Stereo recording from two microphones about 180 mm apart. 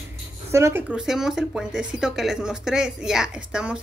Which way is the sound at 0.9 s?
5° right (ahead or behind).